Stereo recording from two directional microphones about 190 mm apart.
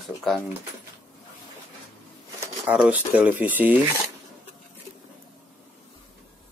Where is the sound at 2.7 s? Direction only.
5° right (ahead or behind).